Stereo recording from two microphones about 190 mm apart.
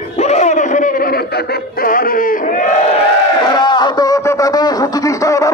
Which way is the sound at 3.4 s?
25° left (ahead or behind).